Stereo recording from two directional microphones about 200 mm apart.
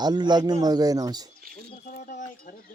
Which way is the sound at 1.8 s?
40° left (ahead or behind).